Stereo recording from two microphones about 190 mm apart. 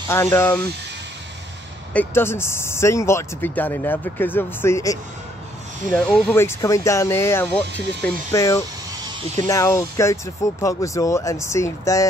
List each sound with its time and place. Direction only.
0.1 s speech: 15° left (ahead or behind)
2.0 s speech: 10° left (ahead or behind)